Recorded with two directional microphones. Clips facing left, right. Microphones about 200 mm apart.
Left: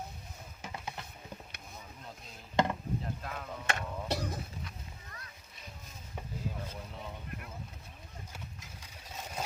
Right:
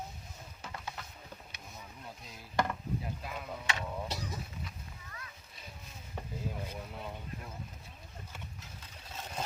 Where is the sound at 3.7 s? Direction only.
55° left (ahead or behind).